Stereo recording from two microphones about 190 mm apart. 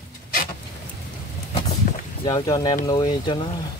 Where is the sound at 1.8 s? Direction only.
45° left (ahead or behind).